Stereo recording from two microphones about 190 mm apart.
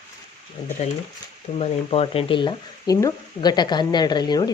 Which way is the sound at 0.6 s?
20° left (ahead or behind).